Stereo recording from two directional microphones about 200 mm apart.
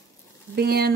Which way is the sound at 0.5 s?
50° right (ahead or behind).